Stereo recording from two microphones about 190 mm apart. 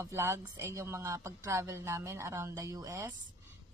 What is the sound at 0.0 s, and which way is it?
A woman's voice, 15° right (ahead or behind).